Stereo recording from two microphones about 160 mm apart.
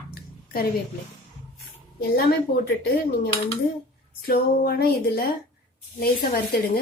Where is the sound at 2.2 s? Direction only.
75° left (ahead or behind).